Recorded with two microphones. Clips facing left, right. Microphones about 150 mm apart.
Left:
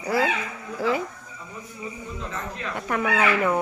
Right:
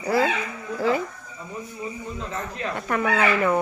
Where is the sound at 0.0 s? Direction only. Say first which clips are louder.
Right 2 dB; 10° left (ahead or behind).